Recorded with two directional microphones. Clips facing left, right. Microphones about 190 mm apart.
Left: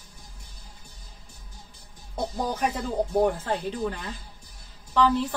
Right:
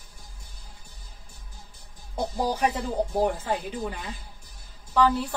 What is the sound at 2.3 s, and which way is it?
Speech, 5° right (ahead or behind).